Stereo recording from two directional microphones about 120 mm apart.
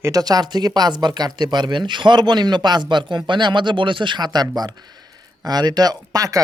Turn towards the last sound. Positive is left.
turn(degrees=-30)  # may be behind; listen again after turning